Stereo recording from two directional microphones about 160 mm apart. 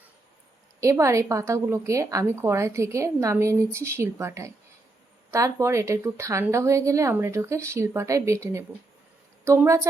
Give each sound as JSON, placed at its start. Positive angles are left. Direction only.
{"t": 0.8, "sound": "a woman's voice", "side_deg": -20}